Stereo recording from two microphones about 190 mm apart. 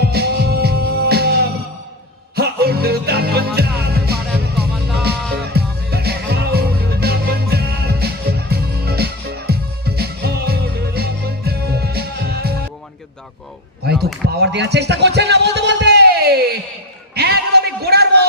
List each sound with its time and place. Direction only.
0.0 s music: 60° right (ahead or behind)
4.7 s music: centre (ahead or behind)
5.4 s music: 55° right (ahead or behind)
14.0 s a sound: 60° right (ahead or behind)